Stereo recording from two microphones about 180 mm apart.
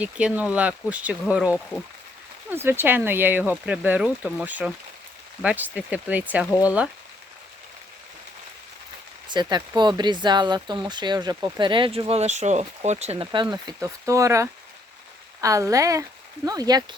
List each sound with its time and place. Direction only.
0.0 s speech: 5° right (ahead or behind)
9.2 s speech: 25° right (ahead or behind)